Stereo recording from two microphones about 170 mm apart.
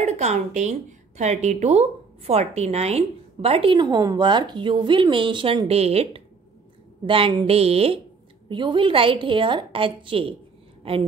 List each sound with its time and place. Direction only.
0.0 s a woman's voice: 40° right (ahead or behind)